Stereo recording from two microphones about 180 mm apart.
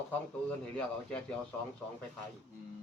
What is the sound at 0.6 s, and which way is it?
Speech, 5° left (ahead or behind).